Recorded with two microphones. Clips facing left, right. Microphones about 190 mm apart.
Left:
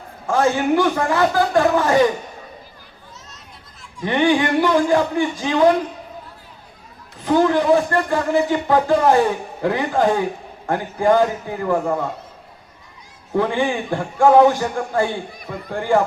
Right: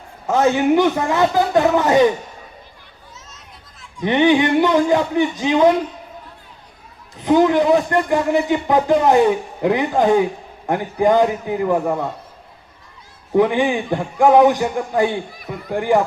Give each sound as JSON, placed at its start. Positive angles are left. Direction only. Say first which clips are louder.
{"t": 0.3, "sound": "a man's voice", "louder": "right 2 dB", "side_deg": -20}
{"t": 3.2, "sound": "children playing", "louder": "even", "side_deg": 0}
{"t": 4.0, "sound": "a man's voice", "louder": "right 3 dB", "side_deg": -20}
{"t": 7.2, "sound": "a man's voice", "louder": "right 2 dB", "side_deg": -20}
{"t": 13.3, "sound": "a man's voice", "louder": "right 4 dB", "side_deg": -15}